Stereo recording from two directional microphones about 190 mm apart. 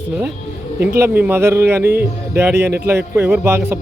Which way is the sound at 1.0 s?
10° right (ahead or behind).